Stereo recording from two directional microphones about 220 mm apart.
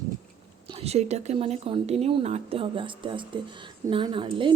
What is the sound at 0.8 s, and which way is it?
A woman's voice, 30° right (ahead or behind).